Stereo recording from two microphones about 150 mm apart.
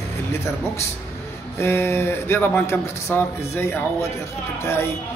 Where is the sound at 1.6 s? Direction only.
15° left (ahead or behind).